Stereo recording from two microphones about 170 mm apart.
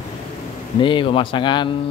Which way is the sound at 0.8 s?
30° left (ahead or behind).